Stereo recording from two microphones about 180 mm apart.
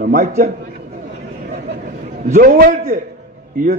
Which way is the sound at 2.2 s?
50° right (ahead or behind).